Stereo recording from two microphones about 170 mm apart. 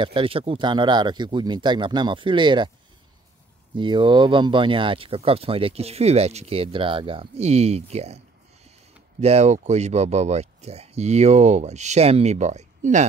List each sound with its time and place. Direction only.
0.0 s speech: 30° right (ahead or behind)
3.7 s speech: 30° right (ahead or behind)
9.2 s speech: 40° right (ahead or behind)